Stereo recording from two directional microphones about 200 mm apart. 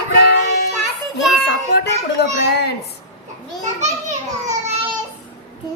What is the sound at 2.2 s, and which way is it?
Speech, 55° left (ahead or behind).